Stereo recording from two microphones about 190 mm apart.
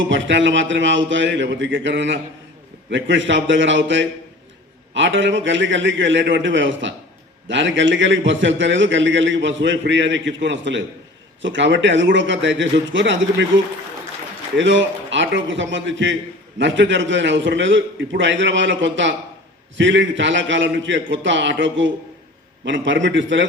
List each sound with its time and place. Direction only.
0.1 s a man's voice: 75° right (ahead or behind)
14.5 s a man's voice: 75° right (ahead or behind)